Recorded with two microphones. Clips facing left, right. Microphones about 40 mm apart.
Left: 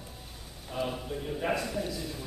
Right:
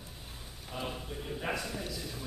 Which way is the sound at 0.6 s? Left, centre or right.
Centre.